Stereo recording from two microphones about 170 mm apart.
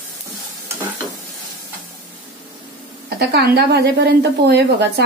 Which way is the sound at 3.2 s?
70° right (ahead or behind).